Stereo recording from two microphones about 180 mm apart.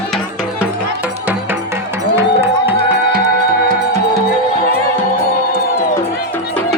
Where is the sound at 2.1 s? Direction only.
15° right (ahead or behind).